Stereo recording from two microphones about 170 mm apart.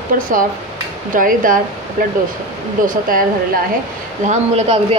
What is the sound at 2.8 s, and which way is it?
Speech, 55° right (ahead or behind).